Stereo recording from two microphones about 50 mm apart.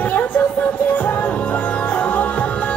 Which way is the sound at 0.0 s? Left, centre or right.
Left.